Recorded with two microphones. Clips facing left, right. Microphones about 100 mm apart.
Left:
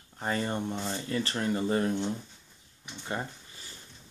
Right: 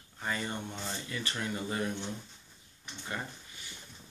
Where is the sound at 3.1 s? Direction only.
30° left (ahead or behind).